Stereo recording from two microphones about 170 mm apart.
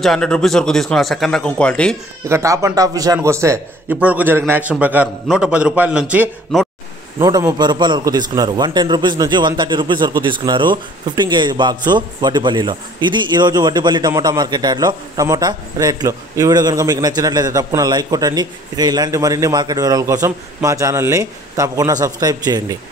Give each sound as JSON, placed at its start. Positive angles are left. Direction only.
{"t": 0.0, "sound": "speech", "side_deg": 5}
{"t": 2.2, "sound": "a man's voice", "side_deg": -15}
{"t": 7.2, "sound": "a man's voice", "side_deg": -25}